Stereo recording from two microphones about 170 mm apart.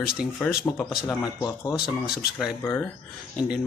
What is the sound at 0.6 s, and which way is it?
Speech, 5° left (ahead or behind).